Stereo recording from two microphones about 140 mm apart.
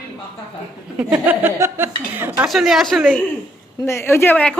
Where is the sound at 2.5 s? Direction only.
Centre (ahead or behind).